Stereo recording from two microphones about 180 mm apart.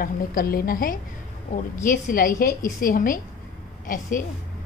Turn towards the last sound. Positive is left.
turn(degrees=45)  # may be behind; listen again after turning